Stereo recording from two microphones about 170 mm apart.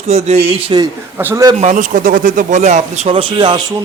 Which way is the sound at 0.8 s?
15° right (ahead or behind).